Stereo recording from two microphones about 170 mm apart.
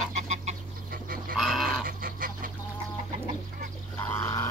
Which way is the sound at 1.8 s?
55° right (ahead or behind).